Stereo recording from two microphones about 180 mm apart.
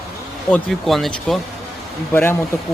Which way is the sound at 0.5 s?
Centre (ahead or behind).